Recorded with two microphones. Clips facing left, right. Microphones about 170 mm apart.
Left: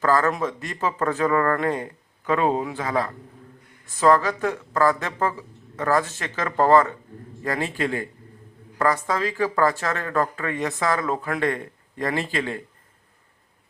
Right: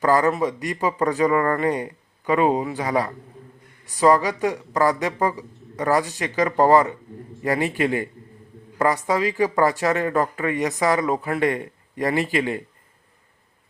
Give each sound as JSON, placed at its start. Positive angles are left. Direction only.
{"t": 0.0, "sound": "a man's voice", "side_deg": -15}